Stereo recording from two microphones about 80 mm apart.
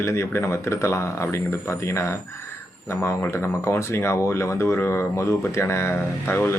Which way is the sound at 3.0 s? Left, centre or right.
Left.